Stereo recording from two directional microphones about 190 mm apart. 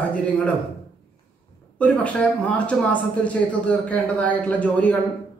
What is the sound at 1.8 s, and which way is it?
A man's voice, 5° left (ahead or behind).